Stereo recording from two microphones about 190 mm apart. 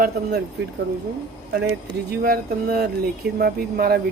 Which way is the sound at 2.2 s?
50° right (ahead or behind).